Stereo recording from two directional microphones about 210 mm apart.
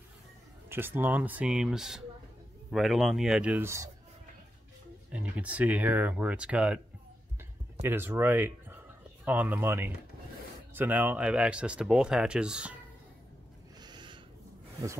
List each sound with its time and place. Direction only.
0.7 s speech: 10° right (ahead or behind)
5.1 s speech: 5° right (ahead or behind)
7.8 s speech: 10° right (ahead or behind)
13.7 s a sound: 20° right (ahead or behind)